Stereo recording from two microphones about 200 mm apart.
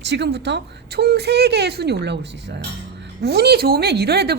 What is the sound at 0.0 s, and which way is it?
A woman's voice, 60° right (ahead or behind).